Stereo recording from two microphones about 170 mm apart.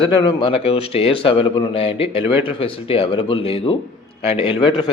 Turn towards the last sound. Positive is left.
turn(degrees=30)  # may be behind; listen again after turning